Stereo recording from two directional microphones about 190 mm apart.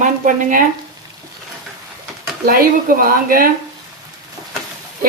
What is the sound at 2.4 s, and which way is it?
Speech, 50° right (ahead or behind).